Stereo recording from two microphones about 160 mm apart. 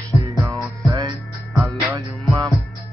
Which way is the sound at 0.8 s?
20° right (ahead or behind).